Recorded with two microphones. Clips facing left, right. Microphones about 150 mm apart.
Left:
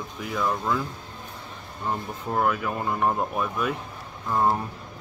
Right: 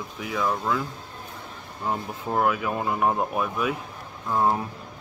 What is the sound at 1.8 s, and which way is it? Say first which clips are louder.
Speech: right 1 dB; 5° right (ahead or behind).